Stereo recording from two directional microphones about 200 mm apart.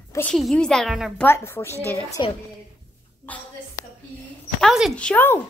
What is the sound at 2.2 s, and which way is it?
Speech, 20° left (ahead or behind).